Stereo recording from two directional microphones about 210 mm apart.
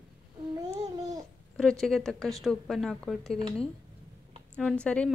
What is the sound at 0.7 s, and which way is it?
Babbling, 15° right (ahead or behind).